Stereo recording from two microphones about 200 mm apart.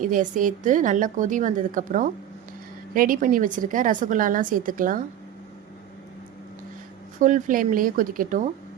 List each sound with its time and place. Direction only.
0.0 s a woman's voice: 40° right (ahead or behind)
7.2 s a woman's voice: 40° right (ahead or behind)